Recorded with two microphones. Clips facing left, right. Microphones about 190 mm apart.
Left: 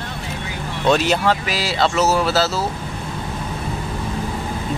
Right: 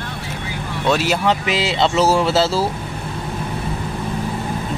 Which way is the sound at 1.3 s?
25° right (ahead or behind).